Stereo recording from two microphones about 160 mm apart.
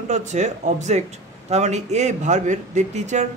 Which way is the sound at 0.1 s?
50° right (ahead or behind).